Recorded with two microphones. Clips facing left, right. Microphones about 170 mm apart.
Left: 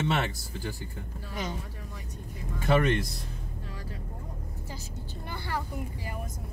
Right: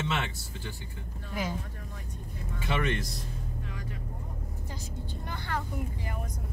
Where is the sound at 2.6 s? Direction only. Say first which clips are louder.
Left 6 dB; 40° left (ahead or behind).